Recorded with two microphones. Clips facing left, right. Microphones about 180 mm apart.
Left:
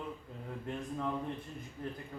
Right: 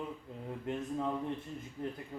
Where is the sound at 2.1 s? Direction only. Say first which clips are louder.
Right 2 dB; 25° right (ahead or behind).